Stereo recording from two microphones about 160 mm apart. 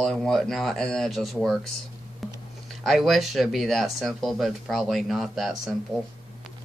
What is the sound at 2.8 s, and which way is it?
Speech, centre (ahead or behind).